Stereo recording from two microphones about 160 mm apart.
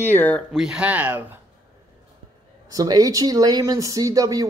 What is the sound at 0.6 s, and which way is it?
Speech, 5° right (ahead or behind).